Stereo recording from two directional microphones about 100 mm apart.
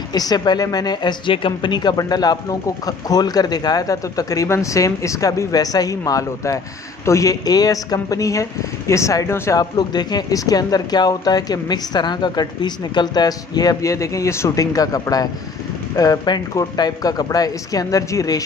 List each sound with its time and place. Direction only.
0.1 s speech: 40° left (ahead or behind)